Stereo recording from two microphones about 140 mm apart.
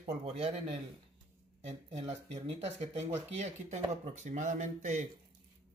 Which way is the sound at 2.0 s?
50° right (ahead or behind).